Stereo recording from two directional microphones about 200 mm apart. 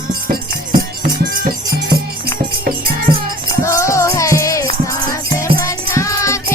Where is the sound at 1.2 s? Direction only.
45° right (ahead or behind).